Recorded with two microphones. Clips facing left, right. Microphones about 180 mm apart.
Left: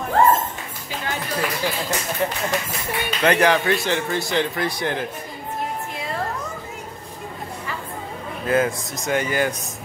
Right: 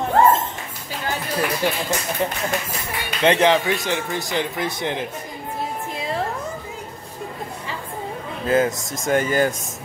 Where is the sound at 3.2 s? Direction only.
25° right (ahead or behind).